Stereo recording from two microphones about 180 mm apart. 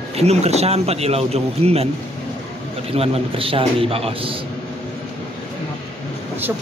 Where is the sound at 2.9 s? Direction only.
35° right (ahead or behind).